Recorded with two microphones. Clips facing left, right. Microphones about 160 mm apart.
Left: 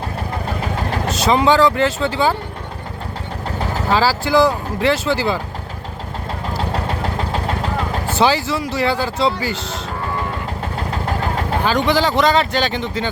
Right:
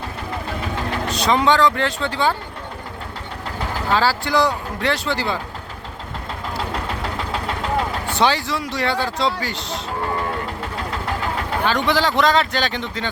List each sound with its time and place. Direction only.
1.1 s speech: 5° left (ahead or behind)
3.9 s speech: 5° left (ahead or behind)
7.2 s vehicle: 40° left (ahead or behind)
8.1 s speech: 5° left (ahead or behind)
11.6 s speech: centre (ahead or behind)